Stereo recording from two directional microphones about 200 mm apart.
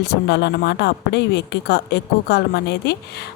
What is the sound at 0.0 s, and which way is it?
A woman's voice, 55° left (ahead or behind).